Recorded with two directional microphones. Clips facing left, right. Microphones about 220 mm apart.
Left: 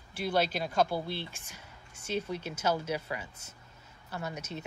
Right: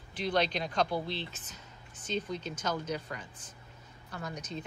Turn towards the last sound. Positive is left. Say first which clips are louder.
# even
turn(degrees=5)  # may be behind; listen again after turning